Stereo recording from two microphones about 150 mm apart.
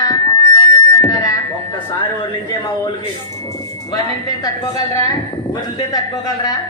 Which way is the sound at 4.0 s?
25° left (ahead or behind).